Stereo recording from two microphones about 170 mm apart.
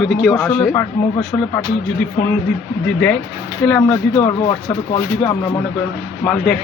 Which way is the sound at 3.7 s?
10° left (ahead or behind).